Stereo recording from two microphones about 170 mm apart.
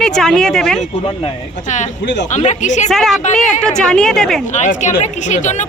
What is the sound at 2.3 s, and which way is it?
Speech, 45° left (ahead or behind).